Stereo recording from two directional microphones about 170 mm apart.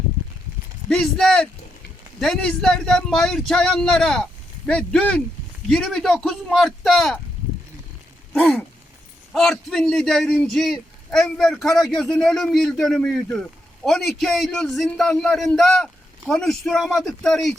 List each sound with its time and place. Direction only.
0.9 s a man's voice: 5° left (ahead or behind)
8.3 s a sound: 5° left (ahead or behind)
9.3 s a man's voice: centre (ahead or behind)